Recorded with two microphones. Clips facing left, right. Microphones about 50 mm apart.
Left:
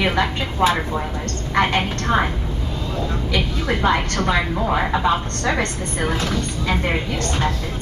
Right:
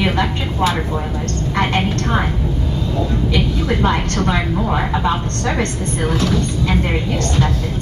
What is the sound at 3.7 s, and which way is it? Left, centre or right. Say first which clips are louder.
Speech: left 2 dB; centre.